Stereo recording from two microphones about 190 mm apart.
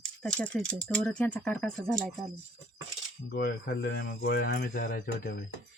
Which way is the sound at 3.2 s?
60° left (ahead or behind).